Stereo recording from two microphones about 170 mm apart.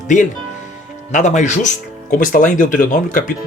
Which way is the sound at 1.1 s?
45° left (ahead or behind).